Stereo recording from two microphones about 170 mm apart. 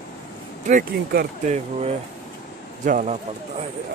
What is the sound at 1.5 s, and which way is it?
Speech, 40° right (ahead or behind).